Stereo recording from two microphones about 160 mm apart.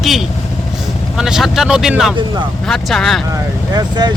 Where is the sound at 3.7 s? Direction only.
25° right (ahead or behind).